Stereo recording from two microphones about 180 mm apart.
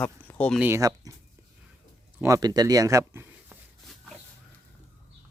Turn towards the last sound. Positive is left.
turn(degrees=-15)  # may be behind; listen again after turning